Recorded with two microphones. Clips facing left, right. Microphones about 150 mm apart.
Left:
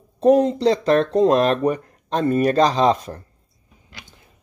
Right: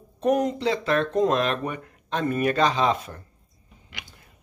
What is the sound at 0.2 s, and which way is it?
Speech, 30° left (ahead or behind).